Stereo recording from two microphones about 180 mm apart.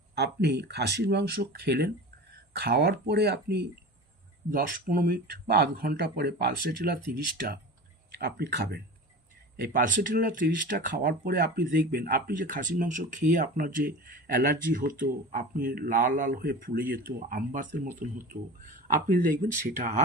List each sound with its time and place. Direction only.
0.2 s speech: 65° right (ahead or behind)
4.5 s speech: 50° right (ahead or behind)
9.6 s speech: 50° right (ahead or behind)